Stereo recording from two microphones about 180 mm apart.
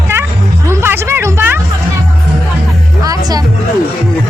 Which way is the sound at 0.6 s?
15° right (ahead or behind).